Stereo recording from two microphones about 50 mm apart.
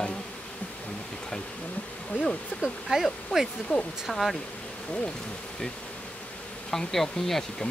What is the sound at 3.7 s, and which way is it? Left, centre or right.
Bee, centre.